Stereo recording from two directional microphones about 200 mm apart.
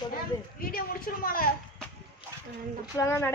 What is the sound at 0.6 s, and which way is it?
Speech, 45° left (ahead or behind).